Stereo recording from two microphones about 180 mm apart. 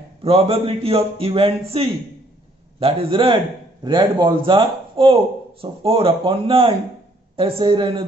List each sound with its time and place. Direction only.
0.2 s a man's voice: 30° right (ahead or behind)